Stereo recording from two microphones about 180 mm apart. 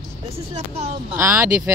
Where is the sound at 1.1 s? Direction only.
15° right (ahead or behind).